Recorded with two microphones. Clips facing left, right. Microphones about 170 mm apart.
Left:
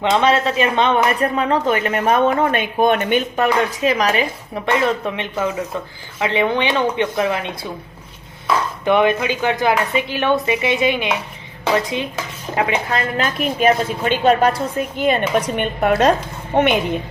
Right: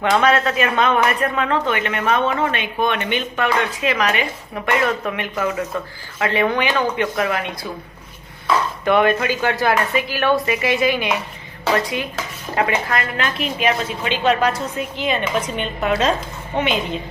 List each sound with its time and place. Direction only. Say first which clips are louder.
0.0 s speech: left 1 dB; 25° left (ahead or behind)
5.0 s speech: left 1 dB; 25° left (ahead or behind)
8.8 s a woman's voice: left 1 dB; 20° left (ahead or behind)
13.0 s a woman's voice: left 3 dB; 40° left (ahead or behind); by 17.0 s 60° left (ahead or behind)